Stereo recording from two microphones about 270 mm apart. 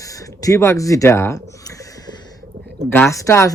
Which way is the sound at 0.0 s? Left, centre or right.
Centre.